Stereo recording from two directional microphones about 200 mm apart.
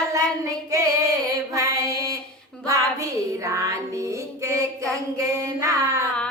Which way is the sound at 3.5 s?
15° right (ahead or behind).